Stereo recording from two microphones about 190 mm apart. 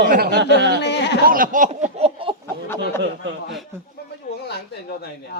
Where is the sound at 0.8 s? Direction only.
65° left (ahead or behind).